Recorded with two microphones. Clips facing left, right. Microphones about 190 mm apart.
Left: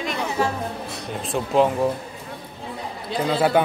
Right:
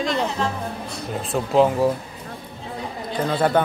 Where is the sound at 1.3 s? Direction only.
Centre (ahead or behind).